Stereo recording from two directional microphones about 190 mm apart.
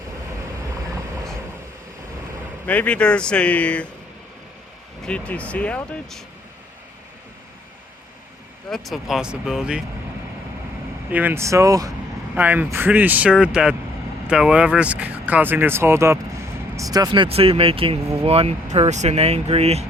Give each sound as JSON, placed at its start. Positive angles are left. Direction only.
{"t": 2.6, "sound": "speech", "side_deg": 5}
{"t": 5.0, "sound": "speech", "side_deg": 5}
{"t": 8.7, "sound": "speech", "side_deg": 0}
{"t": 11.1, "sound": "speech", "side_deg": -10}